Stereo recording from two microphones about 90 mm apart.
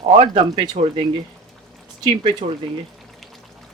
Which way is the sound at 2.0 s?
80° right.